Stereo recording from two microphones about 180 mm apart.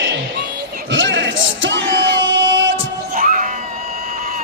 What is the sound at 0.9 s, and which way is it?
Yell, 90° right.